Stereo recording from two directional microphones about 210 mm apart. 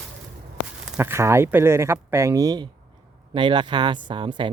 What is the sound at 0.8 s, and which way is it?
Speech, 5° right (ahead or behind).